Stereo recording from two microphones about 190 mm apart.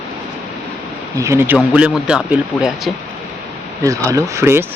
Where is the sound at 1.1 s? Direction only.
15° right (ahead or behind).